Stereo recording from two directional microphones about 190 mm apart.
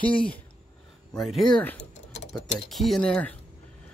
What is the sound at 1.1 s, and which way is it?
Speech, centre (ahead or behind).